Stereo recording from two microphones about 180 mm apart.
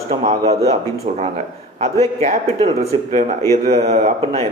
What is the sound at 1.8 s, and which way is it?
Speech, 35° right (ahead or behind).